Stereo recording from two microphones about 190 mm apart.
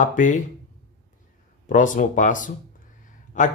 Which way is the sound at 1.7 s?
40° left (ahead or behind).